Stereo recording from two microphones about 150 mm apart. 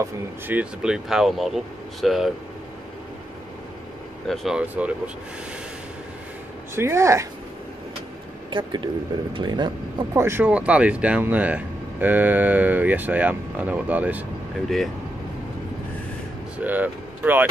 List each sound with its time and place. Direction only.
0.0 s speech: 10° right (ahead or behind)
4.3 s speech: centre (ahead or behind)
6.7 s speech: 20° right (ahead or behind)
8.5 s speech: 30° right (ahead or behind)
10.1 s speech: 15° right (ahead or behind)
16.5 s speech: 10° right (ahead or behind)